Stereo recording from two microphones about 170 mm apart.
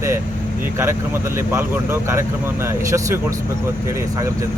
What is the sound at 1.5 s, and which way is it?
Speech, 15° right (ahead or behind).